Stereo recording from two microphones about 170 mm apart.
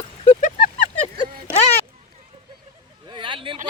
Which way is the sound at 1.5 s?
40° left (ahead or behind).